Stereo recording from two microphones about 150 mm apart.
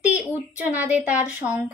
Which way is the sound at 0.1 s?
10° right (ahead or behind).